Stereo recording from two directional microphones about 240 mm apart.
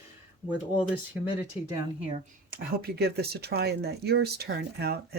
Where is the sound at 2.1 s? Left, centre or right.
Right.